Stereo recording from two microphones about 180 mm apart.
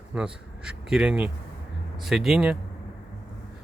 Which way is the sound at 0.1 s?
5° right (ahead or behind).